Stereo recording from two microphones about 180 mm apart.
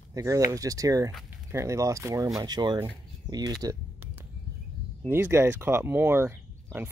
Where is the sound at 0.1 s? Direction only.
20° right (ahead or behind).